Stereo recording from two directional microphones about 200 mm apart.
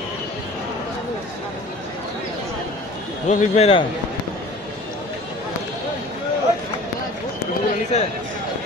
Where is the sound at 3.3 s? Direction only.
30° left (ahead or behind).